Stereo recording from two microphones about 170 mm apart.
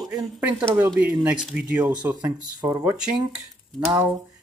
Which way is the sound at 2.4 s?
25° right (ahead or behind).